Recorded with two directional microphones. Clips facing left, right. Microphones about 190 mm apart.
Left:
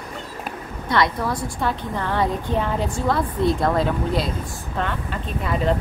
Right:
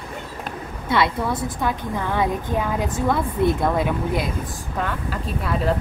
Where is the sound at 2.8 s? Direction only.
20° right (ahead or behind).